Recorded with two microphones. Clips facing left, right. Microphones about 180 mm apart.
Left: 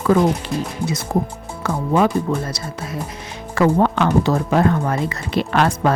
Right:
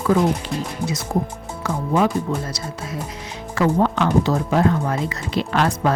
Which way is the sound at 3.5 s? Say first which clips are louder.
Left 2 dB; 60° left (ahead or behind).